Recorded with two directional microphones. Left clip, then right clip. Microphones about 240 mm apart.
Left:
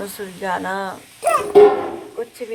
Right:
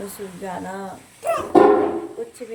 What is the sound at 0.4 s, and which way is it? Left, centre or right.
Speech, centre.